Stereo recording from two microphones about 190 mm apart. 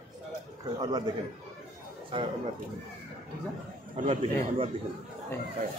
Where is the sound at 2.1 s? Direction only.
25° right (ahead or behind).